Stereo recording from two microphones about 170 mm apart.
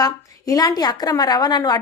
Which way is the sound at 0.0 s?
20° left (ahead or behind).